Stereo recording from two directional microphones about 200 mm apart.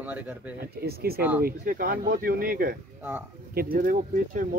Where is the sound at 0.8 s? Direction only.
50° right (ahead or behind).